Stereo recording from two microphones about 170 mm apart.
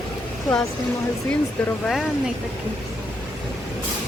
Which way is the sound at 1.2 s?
5° left (ahead or behind).